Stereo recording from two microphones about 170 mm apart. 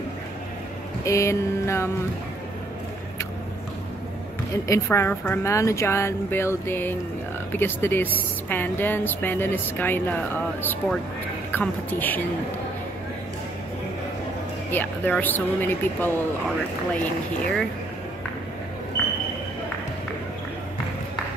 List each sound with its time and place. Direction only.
1.0 s a woman's voice: 15° left (ahead or behind)
4.6 s a woman's voice: 15° left (ahead or behind)
14.7 s a woman's voice: 10° left (ahead or behind)